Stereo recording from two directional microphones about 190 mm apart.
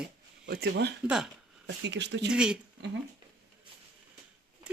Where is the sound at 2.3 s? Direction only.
5° right (ahead or behind).